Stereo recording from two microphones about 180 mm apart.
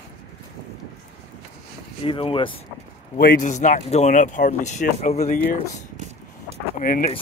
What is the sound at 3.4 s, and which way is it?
Speech, 45° left (ahead or behind).